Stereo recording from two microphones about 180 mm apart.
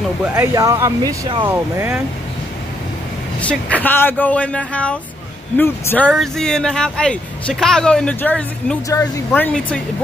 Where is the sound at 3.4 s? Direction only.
10° left (ahead or behind).